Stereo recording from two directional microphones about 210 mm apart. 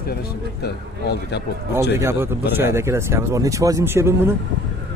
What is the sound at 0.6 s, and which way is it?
Speech, 50° left (ahead or behind).